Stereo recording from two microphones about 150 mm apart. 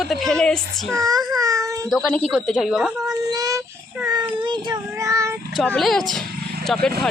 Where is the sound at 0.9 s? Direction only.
25° right (ahead or behind).